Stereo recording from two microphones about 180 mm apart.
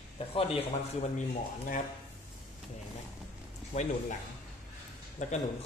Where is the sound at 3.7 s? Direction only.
40° left (ahead or behind).